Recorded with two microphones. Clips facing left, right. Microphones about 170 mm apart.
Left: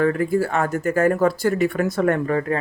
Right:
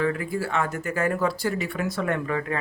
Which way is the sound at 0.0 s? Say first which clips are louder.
Left 7 dB; 45° left (ahead or behind).